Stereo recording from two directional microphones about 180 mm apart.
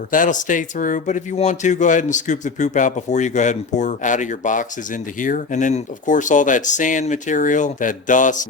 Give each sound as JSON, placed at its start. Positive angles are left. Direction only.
{"t": 0.1, "sound": "speech", "side_deg": 45}